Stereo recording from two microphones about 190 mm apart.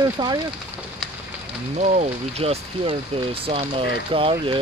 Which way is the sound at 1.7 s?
35° right (ahead or behind).